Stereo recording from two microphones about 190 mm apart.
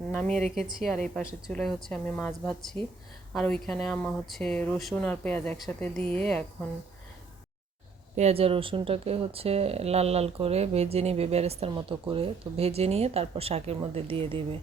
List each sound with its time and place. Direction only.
0.1 s a woman's voice: 5° left (ahead or behind)
8.1 s speech: 35° right (ahead or behind)